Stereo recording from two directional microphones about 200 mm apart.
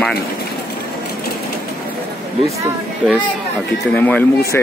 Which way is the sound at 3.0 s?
5° right (ahead or behind).